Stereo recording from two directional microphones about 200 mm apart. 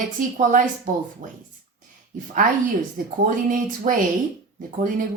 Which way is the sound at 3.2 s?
40° right (ahead or behind).